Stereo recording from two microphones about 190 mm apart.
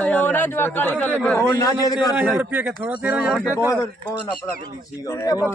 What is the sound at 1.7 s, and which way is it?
Speech, 20° left (ahead or behind).